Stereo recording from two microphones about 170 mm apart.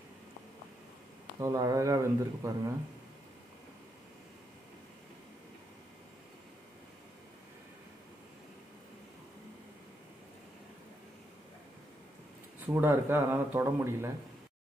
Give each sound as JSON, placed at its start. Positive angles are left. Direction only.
{"t": 1.4, "sound": "speech", "side_deg": -20}
{"t": 12.5, "sound": "speech", "side_deg": -10}